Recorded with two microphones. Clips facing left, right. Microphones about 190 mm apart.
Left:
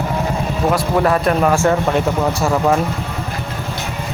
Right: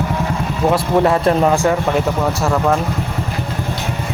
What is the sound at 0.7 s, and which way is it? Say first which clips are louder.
Speech: right 2 dB; 25° right (ahead or behind).